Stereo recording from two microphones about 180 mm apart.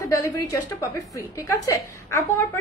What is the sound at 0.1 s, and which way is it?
A woman's voice, 15° left (ahead or behind).